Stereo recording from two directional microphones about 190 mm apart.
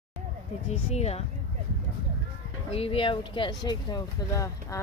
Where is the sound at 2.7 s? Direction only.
30° left (ahead or behind).